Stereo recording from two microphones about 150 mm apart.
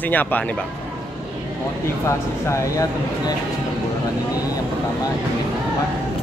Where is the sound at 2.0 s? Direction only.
20° left (ahead or behind).